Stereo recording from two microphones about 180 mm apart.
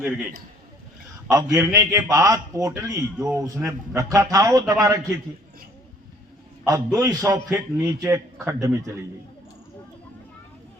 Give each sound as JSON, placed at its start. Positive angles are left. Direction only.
{"t": 0.0, "sound": "a man's voice", "side_deg": -5}
{"t": 1.3, "sound": "a man's voice", "side_deg": -20}
{"t": 6.7, "sound": "a man's voice", "side_deg": -20}